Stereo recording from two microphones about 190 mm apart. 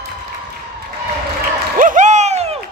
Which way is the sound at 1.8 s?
40° right (ahead or behind).